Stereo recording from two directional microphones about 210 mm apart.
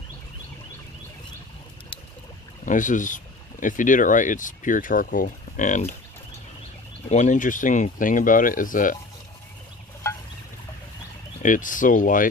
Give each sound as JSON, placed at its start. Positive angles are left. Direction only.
{"t": 2.6, "sound": "speech", "side_deg": 40}
{"t": 7.1, "sound": "speech", "side_deg": 35}
{"t": 11.4, "sound": "speech", "side_deg": 40}